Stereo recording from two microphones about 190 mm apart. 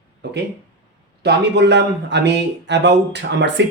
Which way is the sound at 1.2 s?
65° right (ahead or behind).